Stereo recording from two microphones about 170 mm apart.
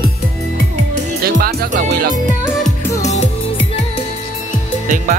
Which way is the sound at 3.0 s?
40° left (ahead or behind).